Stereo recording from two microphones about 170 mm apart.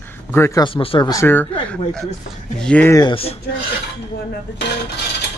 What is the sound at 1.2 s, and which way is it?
Speech, 10° left (ahead or behind).